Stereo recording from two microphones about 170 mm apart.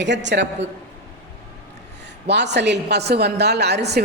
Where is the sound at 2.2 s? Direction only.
85° right.